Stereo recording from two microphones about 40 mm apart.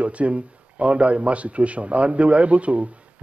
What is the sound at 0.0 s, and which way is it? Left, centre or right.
A man's voice, right.